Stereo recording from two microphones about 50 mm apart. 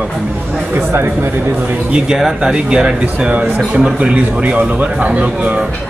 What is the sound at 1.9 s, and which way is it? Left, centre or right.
Speech, centre.